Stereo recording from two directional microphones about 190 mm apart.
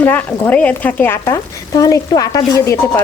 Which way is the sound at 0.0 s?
10° left (ahead or behind).